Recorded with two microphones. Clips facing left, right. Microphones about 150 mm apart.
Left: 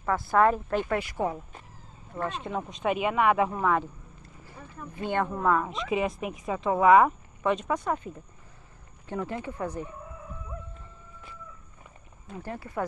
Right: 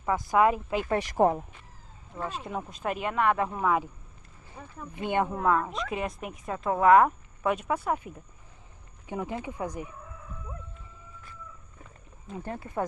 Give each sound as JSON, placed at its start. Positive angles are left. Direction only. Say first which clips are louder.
{"t": 0.0, "sound": "speech", "louder": "left 1 dB", "side_deg": -15}
{"t": 1.1, "sound": "speech", "louder": "right 7 dB", "side_deg": -40}
{"t": 2.2, "sound": "speech", "louder": "left 2 dB", "side_deg": -5}
{"t": 4.9, "sound": "speech", "louder": "right 1 dB", "side_deg": -15}
{"t": 5.4, "sound": "speech", "louder": "even", "side_deg": 0}
{"t": 12.4, "sound": "speech", "louder": "right 1 dB", "side_deg": -20}